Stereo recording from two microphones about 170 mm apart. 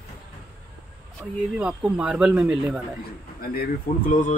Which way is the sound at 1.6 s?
5° right (ahead or behind).